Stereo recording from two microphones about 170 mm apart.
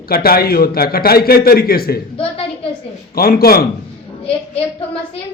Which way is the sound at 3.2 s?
60° left (ahead or behind).